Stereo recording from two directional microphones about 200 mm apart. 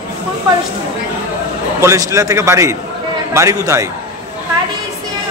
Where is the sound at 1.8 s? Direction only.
15° right (ahead or behind).